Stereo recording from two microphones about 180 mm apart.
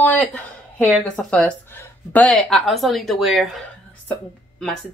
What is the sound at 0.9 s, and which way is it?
Speech, 5° left (ahead or behind).